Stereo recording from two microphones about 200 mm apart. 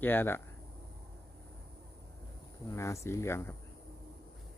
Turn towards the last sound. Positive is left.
turn(degrees=15)  # may be behind; listen again after turning